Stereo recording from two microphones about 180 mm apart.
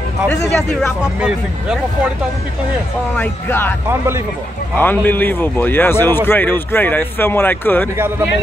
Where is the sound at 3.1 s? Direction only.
10° left (ahead or behind).